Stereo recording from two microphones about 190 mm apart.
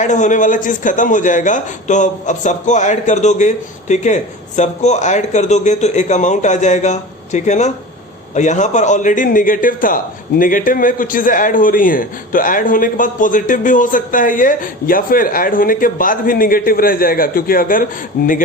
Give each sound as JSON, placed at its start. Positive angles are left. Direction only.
{"t": 0.0, "sound": "a man's voice", "side_deg": 40}